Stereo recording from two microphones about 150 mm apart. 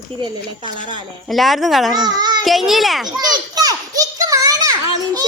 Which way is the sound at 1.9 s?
25° right (ahead or behind).